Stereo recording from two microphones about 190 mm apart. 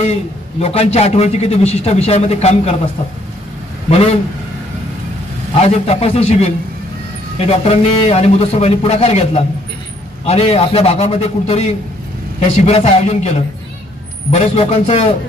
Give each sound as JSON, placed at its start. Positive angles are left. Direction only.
{"t": 0.0, "sound": "a man's voice", "side_deg": 35}
{"t": 5.6, "sound": "a man's voice", "side_deg": 30}